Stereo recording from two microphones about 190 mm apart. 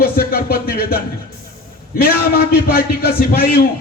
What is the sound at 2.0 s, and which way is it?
A man's voice, 50° left (ahead or behind).